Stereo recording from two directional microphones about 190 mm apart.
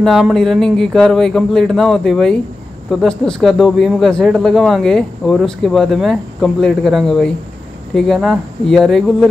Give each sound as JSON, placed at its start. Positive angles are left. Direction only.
{"t": 0.0, "sound": "speech", "side_deg": 0}